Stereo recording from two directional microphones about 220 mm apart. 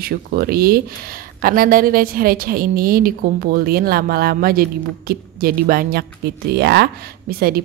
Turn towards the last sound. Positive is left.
turn(degrees=-45)  # may be behind; listen again after turning